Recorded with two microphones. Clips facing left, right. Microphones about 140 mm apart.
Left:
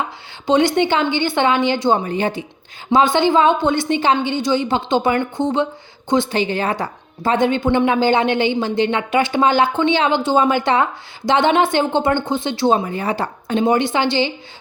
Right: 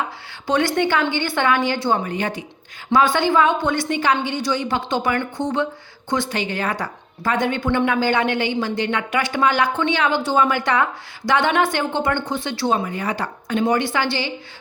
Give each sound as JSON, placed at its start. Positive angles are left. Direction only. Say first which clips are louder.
{"t": 0.4, "sound": "a woman's voice", "louder": "left 4 dB", "side_deg": 20}